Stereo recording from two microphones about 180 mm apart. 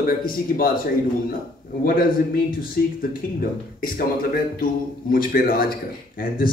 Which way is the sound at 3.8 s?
55° left (ahead or behind).